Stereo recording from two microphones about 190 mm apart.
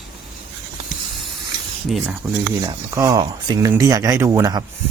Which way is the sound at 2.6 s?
15° right (ahead or behind).